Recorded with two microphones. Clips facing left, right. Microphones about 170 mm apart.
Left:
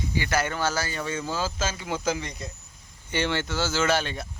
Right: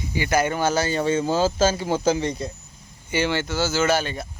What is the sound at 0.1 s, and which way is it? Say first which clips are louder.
Speech: right 6 dB; 15° right (ahead or behind).